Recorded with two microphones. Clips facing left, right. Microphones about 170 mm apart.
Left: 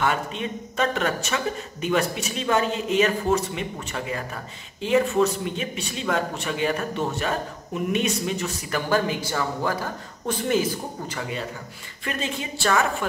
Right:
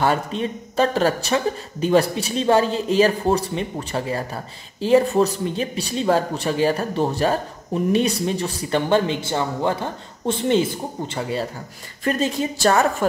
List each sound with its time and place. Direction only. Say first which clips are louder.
0.0 s a man's voice: right 4 dB; 35° right (ahead or behind)